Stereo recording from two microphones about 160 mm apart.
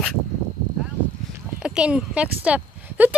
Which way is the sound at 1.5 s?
5° right (ahead or behind).